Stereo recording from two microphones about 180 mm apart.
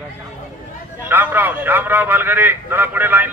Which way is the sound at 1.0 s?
10° right (ahead or behind).